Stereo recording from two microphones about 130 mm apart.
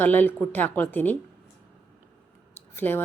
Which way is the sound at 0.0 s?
15° left (ahead or behind).